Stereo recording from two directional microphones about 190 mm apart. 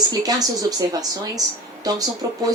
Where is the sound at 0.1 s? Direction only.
20° right (ahead or behind).